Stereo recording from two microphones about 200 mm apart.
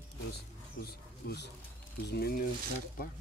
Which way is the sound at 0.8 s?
55° left (ahead or behind).